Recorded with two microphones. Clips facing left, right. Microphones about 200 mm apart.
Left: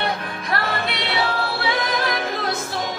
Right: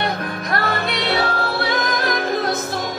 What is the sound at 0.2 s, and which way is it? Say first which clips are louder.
Music: right 3 dB; 40° right (ahead or behind).